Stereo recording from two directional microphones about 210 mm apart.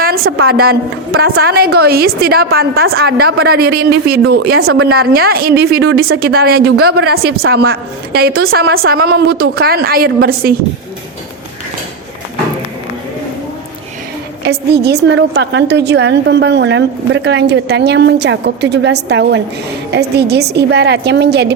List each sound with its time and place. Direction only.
0.0 s a sound: 45° right (ahead or behind)
0.4 s a woman's voice: 45° right (ahead or behind)
14.4 s a woman's voice: 50° right (ahead or behind)